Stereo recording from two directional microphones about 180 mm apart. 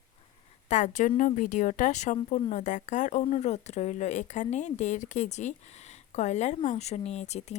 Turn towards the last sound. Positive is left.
turn(degrees=35)  # may be behind; listen again after turning